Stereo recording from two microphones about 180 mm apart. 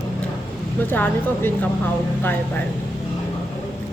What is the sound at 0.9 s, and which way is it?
Speech, 10° left (ahead or behind).